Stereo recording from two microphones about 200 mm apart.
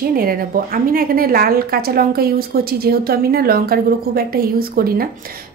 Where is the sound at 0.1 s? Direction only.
45° right (ahead or behind).